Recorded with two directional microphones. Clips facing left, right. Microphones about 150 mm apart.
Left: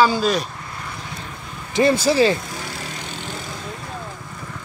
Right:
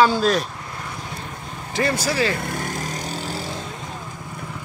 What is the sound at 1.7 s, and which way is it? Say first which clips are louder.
Speech: left 6 dB; 25° left (ahead or behind).